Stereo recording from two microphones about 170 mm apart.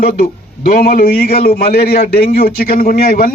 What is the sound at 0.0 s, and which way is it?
A man's voice, 50° left (ahead or behind).